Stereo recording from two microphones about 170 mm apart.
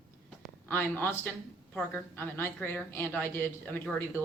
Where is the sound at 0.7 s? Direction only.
10° left (ahead or behind).